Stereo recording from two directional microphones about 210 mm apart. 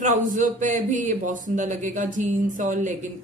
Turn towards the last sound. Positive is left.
turn(degrees=-35)  # may be behind; listen again after turning